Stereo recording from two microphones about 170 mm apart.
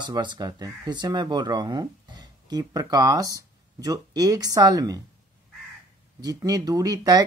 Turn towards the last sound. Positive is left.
turn(degrees=-20)  # may be behind; listen again after turning